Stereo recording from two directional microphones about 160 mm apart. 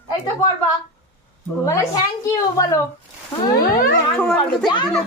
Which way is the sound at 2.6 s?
20° left (ahead or behind).